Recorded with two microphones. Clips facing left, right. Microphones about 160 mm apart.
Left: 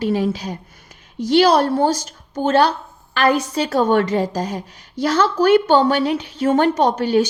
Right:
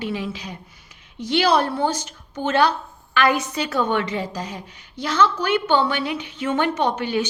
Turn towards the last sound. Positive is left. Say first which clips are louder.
# left 6 dB
turn(degrees=40)  # may be behind; listen again after turning